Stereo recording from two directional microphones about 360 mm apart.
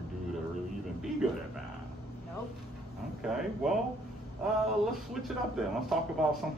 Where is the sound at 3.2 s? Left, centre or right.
Centre.